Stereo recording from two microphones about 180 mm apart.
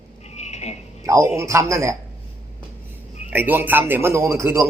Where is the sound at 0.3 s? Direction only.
40° left (ahead or behind).